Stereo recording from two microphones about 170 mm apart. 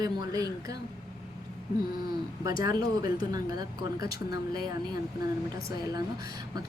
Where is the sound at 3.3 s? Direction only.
20° right (ahead or behind).